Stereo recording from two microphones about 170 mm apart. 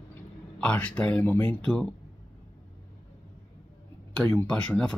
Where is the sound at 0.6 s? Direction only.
5° left (ahead or behind).